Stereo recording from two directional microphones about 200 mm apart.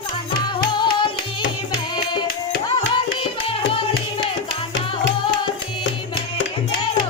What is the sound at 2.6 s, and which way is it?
Music, 20° left (ahead or behind).